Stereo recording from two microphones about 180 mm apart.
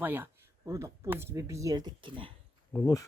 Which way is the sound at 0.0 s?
10° right (ahead or behind).